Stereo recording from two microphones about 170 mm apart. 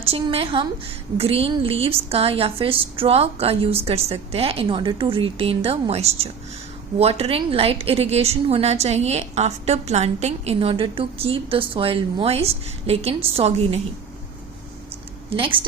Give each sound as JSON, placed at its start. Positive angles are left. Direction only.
{"t": 0.0, "sound": "a woman's voice", "side_deg": -35}
{"t": 15.4, "sound": "a woman's voice", "side_deg": -30}